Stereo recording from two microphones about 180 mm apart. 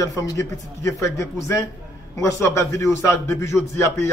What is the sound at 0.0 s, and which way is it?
A man's voice, 15° left (ahead or behind).